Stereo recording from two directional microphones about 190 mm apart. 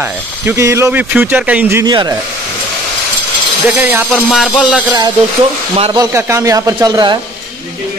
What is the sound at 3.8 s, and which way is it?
Speech, 15° right (ahead or behind).